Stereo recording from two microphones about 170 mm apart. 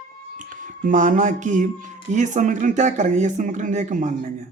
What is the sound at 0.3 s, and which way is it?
Speech, 50° right (ahead or behind).